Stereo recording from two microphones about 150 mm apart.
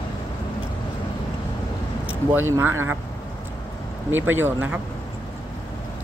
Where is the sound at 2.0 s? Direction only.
15° right (ahead or behind).